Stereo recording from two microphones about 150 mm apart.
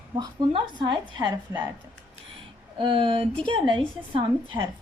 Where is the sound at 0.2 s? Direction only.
30° right (ahead or behind).